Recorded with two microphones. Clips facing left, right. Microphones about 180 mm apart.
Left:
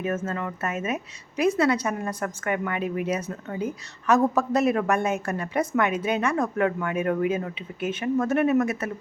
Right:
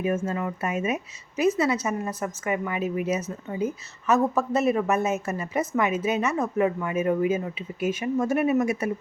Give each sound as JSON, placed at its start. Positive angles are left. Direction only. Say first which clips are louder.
{"t": 0.0, "sound": "speech", "louder": "right 2 dB", "side_deg": -10}